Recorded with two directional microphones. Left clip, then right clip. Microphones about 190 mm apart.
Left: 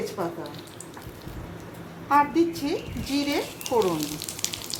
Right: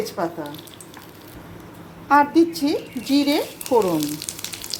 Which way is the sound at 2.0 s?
40° right (ahead or behind).